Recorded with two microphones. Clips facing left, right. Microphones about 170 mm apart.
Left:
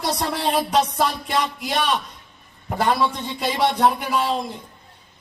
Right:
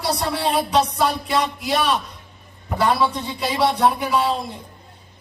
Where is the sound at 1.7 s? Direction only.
40° right (ahead or behind).